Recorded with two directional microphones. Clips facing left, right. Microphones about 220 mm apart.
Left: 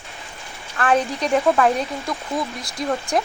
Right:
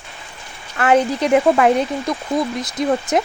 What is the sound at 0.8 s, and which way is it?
Speech, 20° right (ahead or behind).